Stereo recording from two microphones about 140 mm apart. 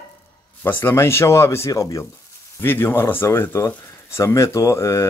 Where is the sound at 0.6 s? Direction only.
15° left (ahead or behind).